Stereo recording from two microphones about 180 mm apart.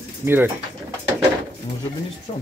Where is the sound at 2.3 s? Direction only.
35° left (ahead or behind).